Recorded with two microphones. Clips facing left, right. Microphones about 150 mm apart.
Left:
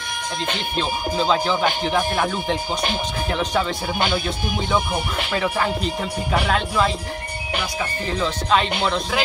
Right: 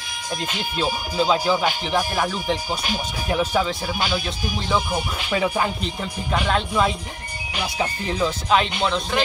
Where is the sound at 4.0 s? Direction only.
55° left (ahead or behind).